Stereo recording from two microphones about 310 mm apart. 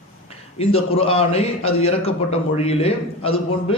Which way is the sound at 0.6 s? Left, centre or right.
Centre.